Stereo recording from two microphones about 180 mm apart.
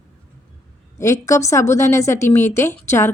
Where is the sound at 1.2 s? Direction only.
15° left (ahead or behind).